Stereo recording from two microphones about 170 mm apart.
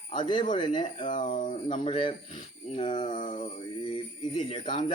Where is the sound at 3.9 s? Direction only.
30° left (ahead or behind).